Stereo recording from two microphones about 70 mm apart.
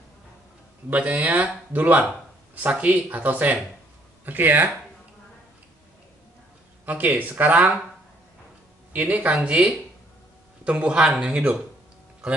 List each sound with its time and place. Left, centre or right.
0.8 s speech: right
6.9 s speech: right
8.9 s speech: right